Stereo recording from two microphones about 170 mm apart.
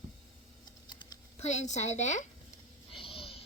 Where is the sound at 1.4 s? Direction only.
40° left (ahead or behind).